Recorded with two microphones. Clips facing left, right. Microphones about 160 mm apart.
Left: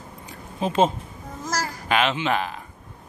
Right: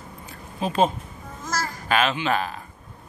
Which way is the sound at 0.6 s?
20° left (ahead or behind).